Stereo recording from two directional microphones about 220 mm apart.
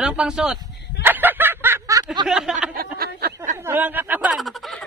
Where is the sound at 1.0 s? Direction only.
10° right (ahead or behind).